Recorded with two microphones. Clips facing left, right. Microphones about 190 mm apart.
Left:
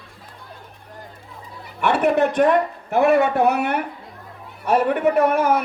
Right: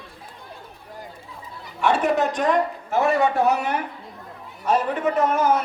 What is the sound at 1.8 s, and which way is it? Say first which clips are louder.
A man's voice: left 2 dB; 60° left (ahead or behind).